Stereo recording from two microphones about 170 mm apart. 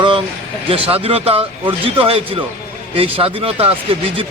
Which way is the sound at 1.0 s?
35° right (ahead or behind).